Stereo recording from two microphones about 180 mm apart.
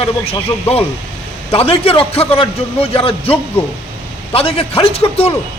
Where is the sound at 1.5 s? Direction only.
30° left (ahead or behind).